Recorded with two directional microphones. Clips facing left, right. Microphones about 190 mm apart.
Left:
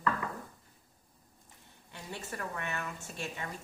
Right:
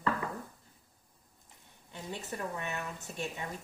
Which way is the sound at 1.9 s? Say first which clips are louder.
Right 2 dB; 20° right (ahead or behind).